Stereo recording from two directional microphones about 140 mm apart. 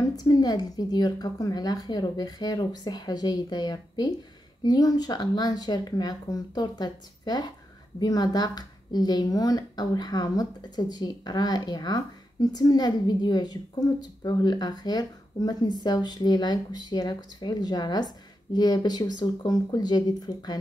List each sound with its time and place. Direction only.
0.0 s a woman's voice: 25° left (ahead or behind)